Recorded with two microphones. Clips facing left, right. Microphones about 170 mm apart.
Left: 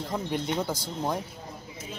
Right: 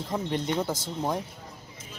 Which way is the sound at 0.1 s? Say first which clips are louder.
Right 2 dB; centre (ahead or behind).